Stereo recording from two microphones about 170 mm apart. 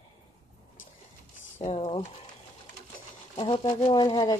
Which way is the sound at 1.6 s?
35° left (ahead or behind).